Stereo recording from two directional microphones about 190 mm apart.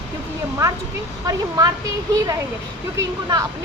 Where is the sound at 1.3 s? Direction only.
20° right (ahead or behind).